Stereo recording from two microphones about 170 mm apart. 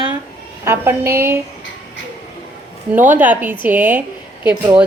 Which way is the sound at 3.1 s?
10° right (ahead or behind).